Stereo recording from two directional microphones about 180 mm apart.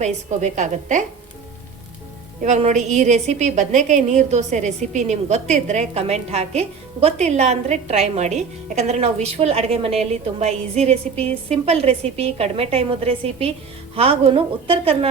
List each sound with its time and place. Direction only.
0.0 s a woman's voice: 40° right (ahead or behind)
2.4 s a woman's voice: 40° right (ahead or behind)